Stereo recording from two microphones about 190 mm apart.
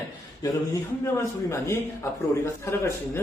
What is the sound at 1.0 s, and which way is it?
Speech, 15° left (ahead or behind).